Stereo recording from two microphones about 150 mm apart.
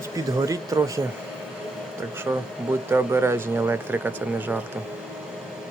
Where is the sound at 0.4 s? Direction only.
20° right (ahead or behind).